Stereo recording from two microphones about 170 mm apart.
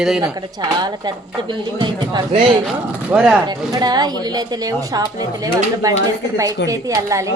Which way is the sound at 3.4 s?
25° right (ahead or behind).